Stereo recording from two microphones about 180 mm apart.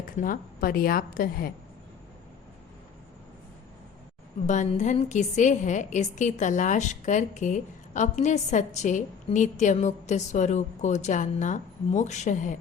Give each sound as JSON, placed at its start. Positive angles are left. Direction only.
{"t": 0.2, "sound": "a woman's voice", "side_deg": 50}
{"t": 4.4, "sound": "a woman's voice", "side_deg": 40}